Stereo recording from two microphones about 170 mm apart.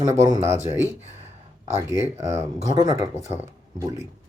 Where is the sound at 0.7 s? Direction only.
35° left (ahead or behind).